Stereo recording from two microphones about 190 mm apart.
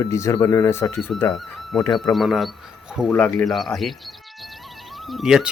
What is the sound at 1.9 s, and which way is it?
Speech, centre (ahead or behind).